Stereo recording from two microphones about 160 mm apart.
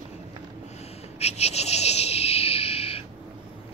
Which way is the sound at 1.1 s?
40° left (ahead or behind).